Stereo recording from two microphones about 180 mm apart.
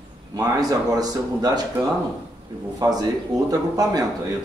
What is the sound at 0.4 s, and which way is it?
Speech, 20° right (ahead or behind).